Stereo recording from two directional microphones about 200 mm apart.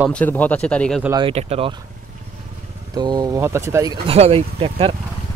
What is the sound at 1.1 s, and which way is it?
Speech, 25° right (ahead or behind).